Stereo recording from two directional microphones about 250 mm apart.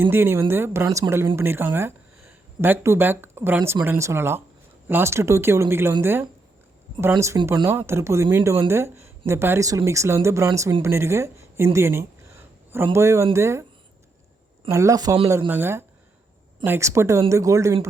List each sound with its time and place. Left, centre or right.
0.0 s speech: centre
14.7 s speech: centre